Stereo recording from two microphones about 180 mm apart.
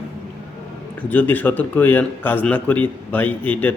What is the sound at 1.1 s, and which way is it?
A man's voice, 10° left (ahead or behind).